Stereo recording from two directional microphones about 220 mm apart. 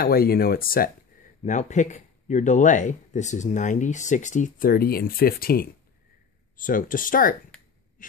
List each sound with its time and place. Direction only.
0.0 s speech: 45° left (ahead or behind)